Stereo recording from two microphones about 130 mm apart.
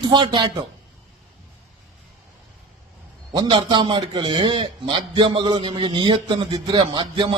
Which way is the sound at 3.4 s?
40° right (ahead or behind).